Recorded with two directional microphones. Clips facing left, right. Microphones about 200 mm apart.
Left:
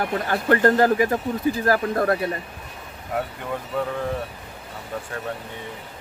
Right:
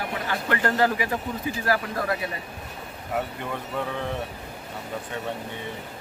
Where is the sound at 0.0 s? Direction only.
45° left (ahead or behind).